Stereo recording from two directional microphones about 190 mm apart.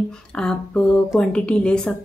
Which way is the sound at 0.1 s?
5° left (ahead or behind).